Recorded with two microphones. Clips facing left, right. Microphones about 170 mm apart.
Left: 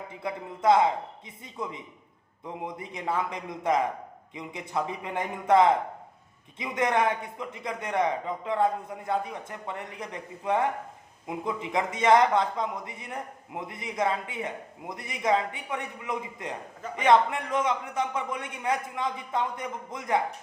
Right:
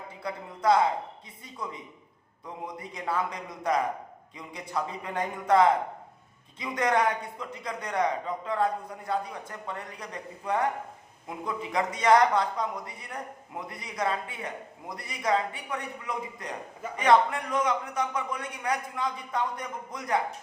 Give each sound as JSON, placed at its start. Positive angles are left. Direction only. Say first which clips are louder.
{"t": 0.2, "sound": "speech", "louder": "left 2 dB", "side_deg": 20}